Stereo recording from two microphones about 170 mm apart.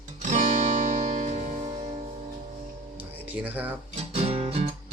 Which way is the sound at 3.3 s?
10° right (ahead or behind).